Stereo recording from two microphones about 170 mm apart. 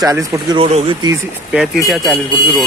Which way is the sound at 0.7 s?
40° right (ahead or behind).